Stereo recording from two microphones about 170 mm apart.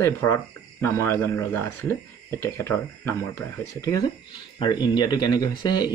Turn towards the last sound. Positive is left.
turn(degrees=25)  # may be behind; listen again after turning